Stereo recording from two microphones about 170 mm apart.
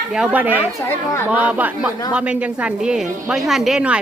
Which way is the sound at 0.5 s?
15° left (ahead or behind).